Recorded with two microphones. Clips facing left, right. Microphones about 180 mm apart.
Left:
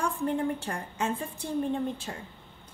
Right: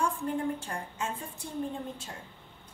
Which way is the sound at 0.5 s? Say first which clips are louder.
Left 3 dB; 75° left (ahead or behind).